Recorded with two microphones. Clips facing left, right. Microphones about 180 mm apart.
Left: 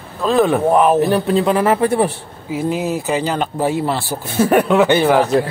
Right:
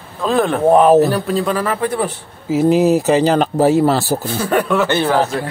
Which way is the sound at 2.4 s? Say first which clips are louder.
Right 7 dB; 40° right (ahead or behind).